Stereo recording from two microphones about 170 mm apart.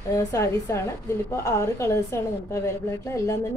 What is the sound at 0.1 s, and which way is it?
A woman's voice, 20° left (ahead or behind).